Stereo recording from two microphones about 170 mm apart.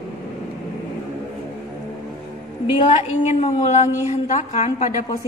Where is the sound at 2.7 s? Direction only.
30° left (ahead or behind).